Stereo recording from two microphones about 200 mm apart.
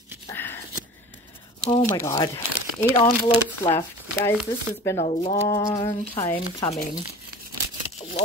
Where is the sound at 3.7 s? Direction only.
15° left (ahead or behind).